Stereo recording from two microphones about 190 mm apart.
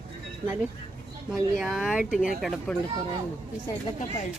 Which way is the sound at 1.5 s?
Centre (ahead or behind).